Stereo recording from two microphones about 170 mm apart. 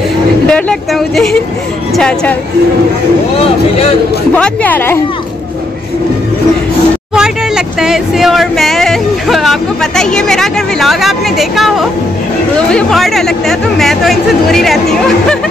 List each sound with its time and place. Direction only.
0.5 s speech: 5° left (ahead or behind)
3.3 s speech: 35° left (ahead or behind)
4.3 s speech: 10° left (ahead or behind)
7.2 s speech: 5° right (ahead or behind)